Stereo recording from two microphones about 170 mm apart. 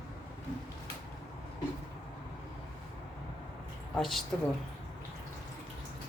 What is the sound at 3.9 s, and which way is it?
Speech, centre (ahead or behind).